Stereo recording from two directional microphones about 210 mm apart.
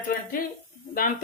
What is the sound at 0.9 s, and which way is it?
Speech, 40° left (ahead or behind).